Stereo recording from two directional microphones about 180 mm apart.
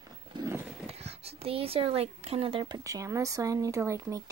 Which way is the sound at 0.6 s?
Centre (ahead or behind).